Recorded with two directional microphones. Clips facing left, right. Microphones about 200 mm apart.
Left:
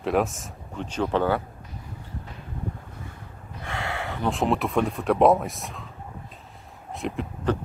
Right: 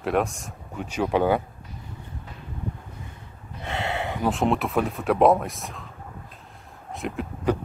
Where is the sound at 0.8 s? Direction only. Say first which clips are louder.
Right 1 dB; 10° right (ahead or behind).